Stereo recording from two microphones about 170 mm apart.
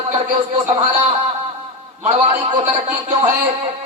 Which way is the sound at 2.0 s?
20° right (ahead or behind).